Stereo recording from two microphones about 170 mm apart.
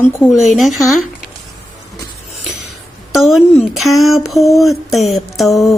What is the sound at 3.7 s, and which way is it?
Speech, centre (ahead or behind).